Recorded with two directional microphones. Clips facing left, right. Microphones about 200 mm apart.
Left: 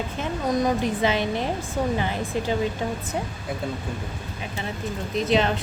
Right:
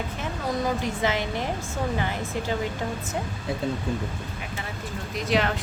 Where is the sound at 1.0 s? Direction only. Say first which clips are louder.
Left 2 dB; 20° left (ahead or behind).